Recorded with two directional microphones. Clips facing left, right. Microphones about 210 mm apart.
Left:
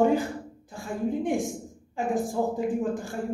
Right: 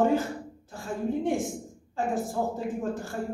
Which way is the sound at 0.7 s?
15° left (ahead or behind).